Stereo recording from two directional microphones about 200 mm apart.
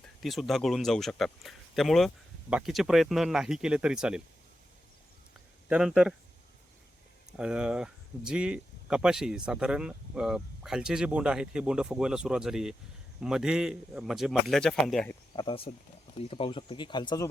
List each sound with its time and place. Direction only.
0.0 s speech: centre (ahead or behind)
5.6 s speech: 5° right (ahead or behind)
7.3 s speech: 5° right (ahead or behind)
15.4 s speech: 25° left (ahead or behind)